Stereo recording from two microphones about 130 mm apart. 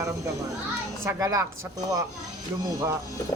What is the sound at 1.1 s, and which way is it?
Speech, 25° right (ahead or behind).